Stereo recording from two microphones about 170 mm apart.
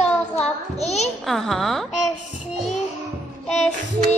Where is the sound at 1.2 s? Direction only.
Centre (ahead or behind).